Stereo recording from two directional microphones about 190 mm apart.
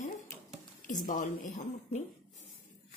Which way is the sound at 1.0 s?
40° left (ahead or behind).